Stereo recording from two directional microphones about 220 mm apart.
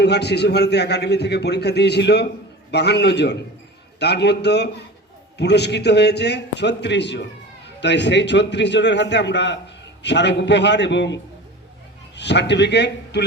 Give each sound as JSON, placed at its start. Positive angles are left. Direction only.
{"t": 0.0, "sound": "a man's voice", "side_deg": 50}